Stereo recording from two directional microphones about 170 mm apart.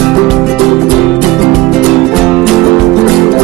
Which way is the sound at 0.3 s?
Centre (ahead or behind).